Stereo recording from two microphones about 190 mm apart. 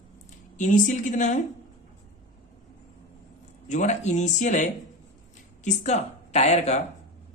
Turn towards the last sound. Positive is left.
turn(degrees=35)  # may be behind; listen again after turning